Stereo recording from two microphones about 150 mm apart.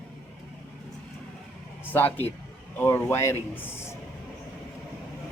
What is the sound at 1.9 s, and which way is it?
A man's voice, 10° left (ahead or behind).